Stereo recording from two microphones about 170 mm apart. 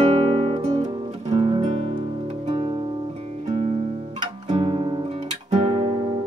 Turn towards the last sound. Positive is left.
turn(degrees=-35)  # may be behind; listen again after turning